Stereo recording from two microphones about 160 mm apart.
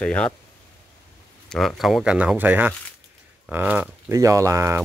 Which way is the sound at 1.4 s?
Centre (ahead or behind).